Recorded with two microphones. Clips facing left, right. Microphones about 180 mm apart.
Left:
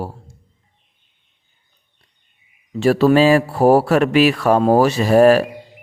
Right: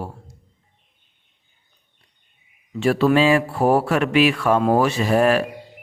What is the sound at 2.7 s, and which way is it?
Speech, 40° left (ahead or behind).